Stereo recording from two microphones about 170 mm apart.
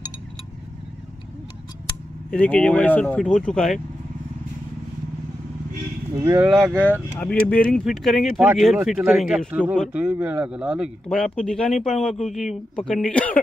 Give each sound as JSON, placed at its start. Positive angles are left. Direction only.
{"t": 2.3, "sound": "speech", "side_deg": 10}
{"t": 6.1, "sound": "speech", "side_deg": -15}
{"t": 6.5, "sound": "speech", "side_deg": 0}